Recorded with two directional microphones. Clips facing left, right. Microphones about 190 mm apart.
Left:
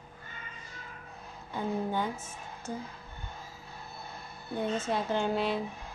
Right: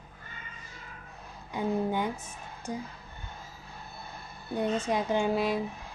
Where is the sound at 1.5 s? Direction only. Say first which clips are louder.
Right 3 dB; 15° right (ahead or behind).